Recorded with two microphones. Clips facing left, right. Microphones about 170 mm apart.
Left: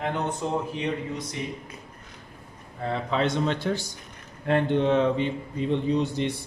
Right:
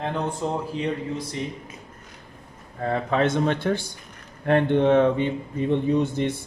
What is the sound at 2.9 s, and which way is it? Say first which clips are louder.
Speech: right 3 dB; 50° right (ahead or behind).